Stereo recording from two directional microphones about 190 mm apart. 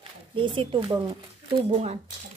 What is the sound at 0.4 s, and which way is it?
Speech, 25° right (ahead or behind).